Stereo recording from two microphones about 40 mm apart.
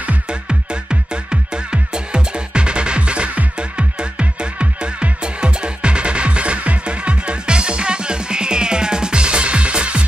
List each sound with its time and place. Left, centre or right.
0.3 s music: right